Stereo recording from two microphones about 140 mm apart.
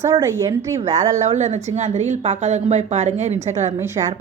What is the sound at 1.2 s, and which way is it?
A woman's voice, 55° right (ahead or behind).